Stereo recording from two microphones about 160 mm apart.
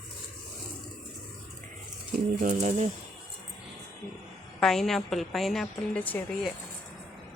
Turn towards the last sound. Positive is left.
turn(degrees=10)  # may be behind; listen again after turning